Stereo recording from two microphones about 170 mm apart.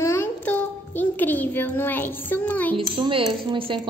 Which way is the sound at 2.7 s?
30° right (ahead or behind).